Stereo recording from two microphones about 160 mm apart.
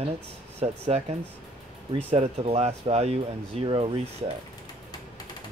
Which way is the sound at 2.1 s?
40° right (ahead or behind).